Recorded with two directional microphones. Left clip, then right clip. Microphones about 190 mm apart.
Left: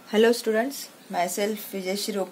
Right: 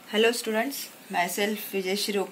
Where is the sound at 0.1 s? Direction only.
60° left (ahead or behind).